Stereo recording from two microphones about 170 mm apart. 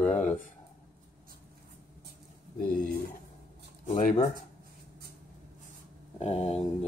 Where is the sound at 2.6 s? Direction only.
60° left (ahead or behind).